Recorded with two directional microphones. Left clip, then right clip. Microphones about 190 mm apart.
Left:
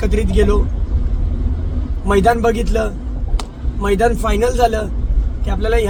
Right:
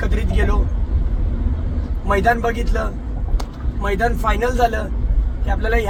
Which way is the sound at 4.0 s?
20° left (ahead or behind).